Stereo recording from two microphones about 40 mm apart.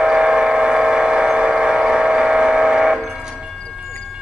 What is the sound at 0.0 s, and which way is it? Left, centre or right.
Train, right.